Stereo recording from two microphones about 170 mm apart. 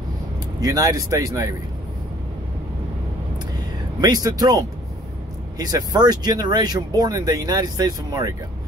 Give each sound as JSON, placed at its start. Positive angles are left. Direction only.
{"t": 0.6, "sound": "speech", "side_deg": -20}
{"t": 4.0, "sound": "speech", "side_deg": -20}